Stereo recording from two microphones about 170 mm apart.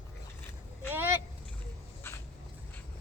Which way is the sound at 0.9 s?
10° right (ahead or behind).